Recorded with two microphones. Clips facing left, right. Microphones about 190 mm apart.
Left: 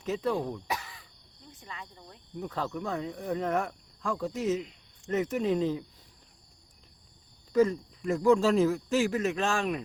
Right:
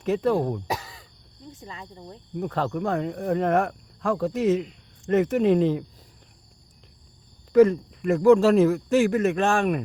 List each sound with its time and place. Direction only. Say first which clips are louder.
0.0 s speech: right 7 dB; 60° right (ahead or behind)
0.7 s cough: right 5 dB; 25° right (ahead or behind)
1.5 s speech: right 3 dB; 30° right (ahead or behind)
2.3 s speech: right 7 dB; 60° right (ahead or behind)
7.5 s speech: right 8 dB; 65° right (ahead or behind)